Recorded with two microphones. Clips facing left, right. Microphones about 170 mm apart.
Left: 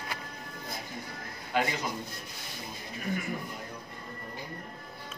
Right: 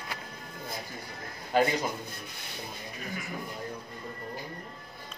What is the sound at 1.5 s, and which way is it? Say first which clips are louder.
Speech: right 4 dB; 40° right (ahead or behind).